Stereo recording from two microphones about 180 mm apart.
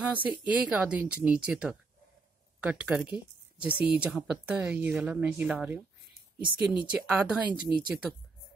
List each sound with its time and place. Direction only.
0.2 s speech: 10° right (ahead or behind)